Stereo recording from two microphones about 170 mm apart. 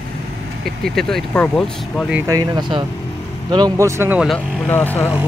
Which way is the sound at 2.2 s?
20° right (ahead or behind).